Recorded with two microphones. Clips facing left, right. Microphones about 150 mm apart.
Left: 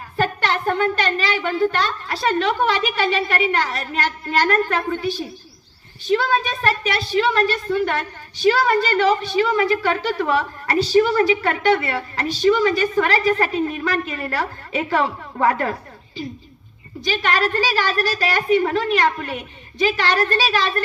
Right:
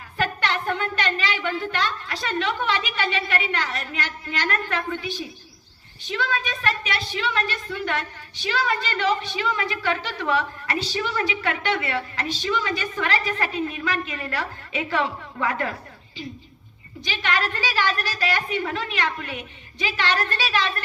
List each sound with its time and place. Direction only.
0.2 s a woman's voice: 40° left (ahead or behind)
17.0 s a woman's voice: 40° left (ahead or behind)